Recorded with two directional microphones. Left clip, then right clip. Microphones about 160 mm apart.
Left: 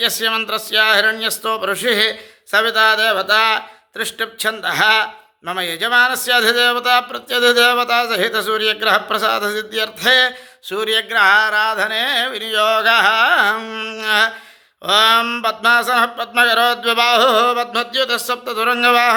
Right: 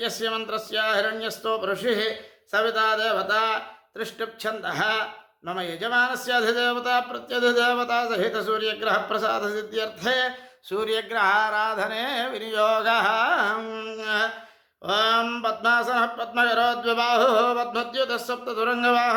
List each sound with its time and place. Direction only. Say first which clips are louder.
0.0 s speech: left 10 dB; 25° left (ahead or behind)
10.8 s speech: left 9 dB; 10° left (ahead or behind)